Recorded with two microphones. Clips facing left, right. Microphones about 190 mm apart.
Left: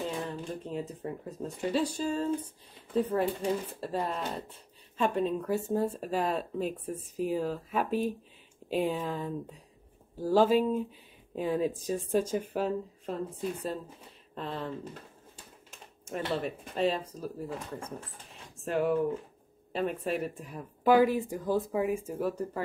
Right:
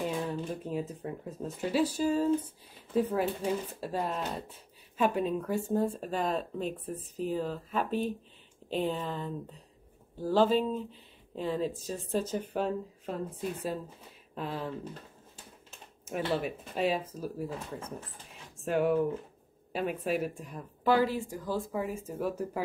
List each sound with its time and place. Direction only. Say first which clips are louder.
0.5 s speech: right 1 dB; 5° right (ahead or behind)
16.1 s speech: right 1 dB; 5° right (ahead or behind)
20.8 s speech: left 4 dB; 15° left (ahead or behind)
22.2 s speech: left 1 dB; 5° right (ahead or behind)